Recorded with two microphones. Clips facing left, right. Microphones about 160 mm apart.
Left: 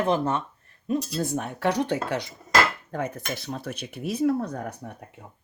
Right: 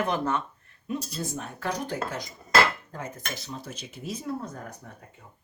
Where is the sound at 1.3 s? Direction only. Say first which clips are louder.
Left 9 dB; 70° left (ahead or behind).